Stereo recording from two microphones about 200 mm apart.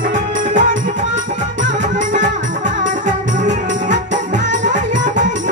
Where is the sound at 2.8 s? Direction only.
40° right (ahead or behind).